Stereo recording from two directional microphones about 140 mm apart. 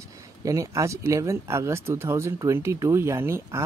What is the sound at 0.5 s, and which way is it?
Speech, 25° right (ahead or behind).